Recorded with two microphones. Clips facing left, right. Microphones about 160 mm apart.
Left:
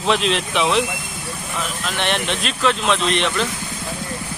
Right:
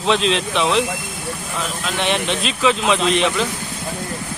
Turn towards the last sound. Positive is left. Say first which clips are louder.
# right 2 dB
turn(degrees=0)  # may be behind; listen again after turning